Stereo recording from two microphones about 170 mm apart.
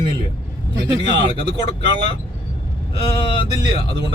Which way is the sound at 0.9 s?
30° left (ahead or behind).